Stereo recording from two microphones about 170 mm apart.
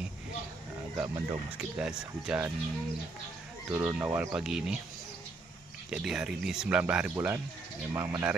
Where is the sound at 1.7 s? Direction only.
5° right (ahead or behind).